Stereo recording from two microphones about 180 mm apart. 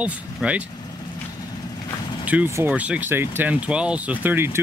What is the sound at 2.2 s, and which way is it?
Speech, 10° right (ahead or behind).